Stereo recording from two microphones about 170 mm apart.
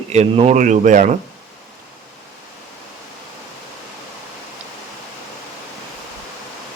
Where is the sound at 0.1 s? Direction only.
40° right (ahead or behind).